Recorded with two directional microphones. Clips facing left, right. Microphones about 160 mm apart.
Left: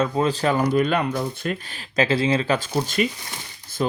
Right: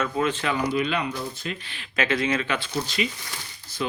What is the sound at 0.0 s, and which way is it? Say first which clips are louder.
Speech: left 4 dB; 30° left (ahead or behind).